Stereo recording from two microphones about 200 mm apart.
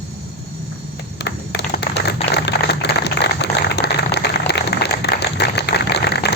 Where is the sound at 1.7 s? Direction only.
55° left (ahead or behind).